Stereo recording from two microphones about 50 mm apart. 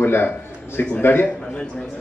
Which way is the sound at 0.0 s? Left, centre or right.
Left.